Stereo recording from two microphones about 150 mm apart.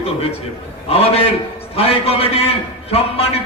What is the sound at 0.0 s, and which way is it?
A man's voice, 40° left (ahead or behind).